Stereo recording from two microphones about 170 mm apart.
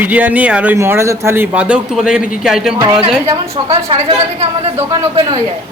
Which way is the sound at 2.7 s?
30° right (ahead or behind).